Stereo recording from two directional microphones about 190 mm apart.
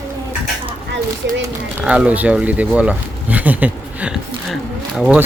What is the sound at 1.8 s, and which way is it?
A child's voice, 5° right (ahead or behind).